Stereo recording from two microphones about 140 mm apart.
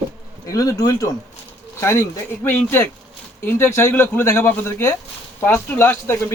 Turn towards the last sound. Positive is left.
turn(degrees=15)  # may be behind; listen again after turning